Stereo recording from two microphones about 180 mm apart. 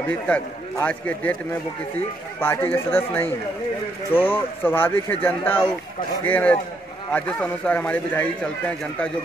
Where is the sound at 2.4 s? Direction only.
10° left (ahead or behind).